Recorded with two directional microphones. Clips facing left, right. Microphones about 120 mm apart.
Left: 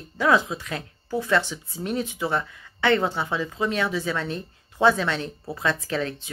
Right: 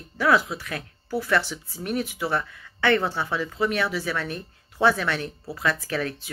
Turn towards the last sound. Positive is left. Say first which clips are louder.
# left 1 dB
turn(degrees=20)  # may be behind; listen again after turning